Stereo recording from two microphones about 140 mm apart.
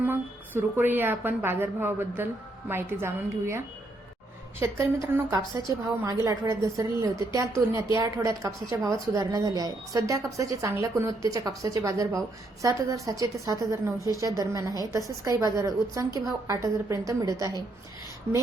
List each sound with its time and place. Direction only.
0.0 s speech: 15° right (ahead or behind)
4.6 s a woman's voice: 20° right (ahead or behind)